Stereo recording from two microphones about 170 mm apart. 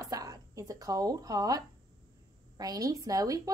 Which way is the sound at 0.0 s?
20° right (ahead or behind).